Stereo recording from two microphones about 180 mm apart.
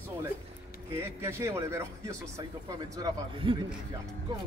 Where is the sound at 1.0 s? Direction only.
15° right (ahead or behind).